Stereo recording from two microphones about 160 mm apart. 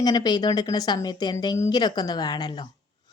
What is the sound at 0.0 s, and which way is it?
Speech, 25° left (ahead or behind).